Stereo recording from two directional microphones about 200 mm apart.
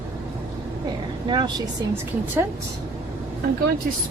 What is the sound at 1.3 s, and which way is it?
Speech, 20° right (ahead or behind).